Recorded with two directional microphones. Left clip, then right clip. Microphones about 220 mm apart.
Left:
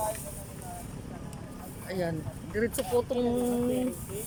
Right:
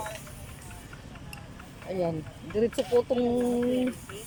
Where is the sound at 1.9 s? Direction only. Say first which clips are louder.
Right 3 dB; 10° right (ahead or behind).